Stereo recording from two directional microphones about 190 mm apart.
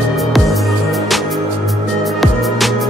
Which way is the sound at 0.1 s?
Centre (ahead or behind).